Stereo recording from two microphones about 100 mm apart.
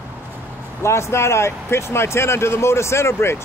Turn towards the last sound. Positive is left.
turn(degrees=25)  # may be behind; listen again after turning